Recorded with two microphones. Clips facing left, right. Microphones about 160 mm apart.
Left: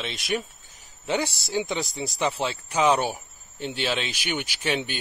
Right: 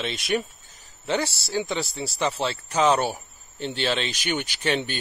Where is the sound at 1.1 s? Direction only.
15° left (ahead or behind).